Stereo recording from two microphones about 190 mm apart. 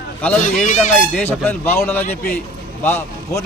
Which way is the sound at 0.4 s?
40° left (ahead or behind).